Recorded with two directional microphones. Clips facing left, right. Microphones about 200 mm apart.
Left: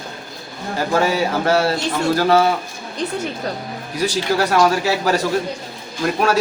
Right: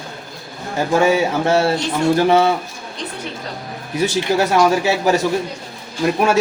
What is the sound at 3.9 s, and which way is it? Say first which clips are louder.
A man's voice: right 2 dB; 20° right (ahead or behind).